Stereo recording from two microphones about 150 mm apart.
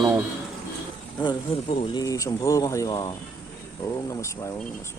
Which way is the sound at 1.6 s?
45° left (ahead or behind).